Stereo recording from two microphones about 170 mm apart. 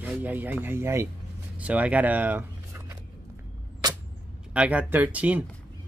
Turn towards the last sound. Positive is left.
turn(degrees=-10)  # may be behind; listen again after turning